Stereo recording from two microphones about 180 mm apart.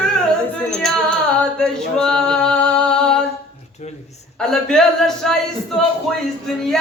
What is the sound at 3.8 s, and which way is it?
Speech, 40° left (ahead or behind).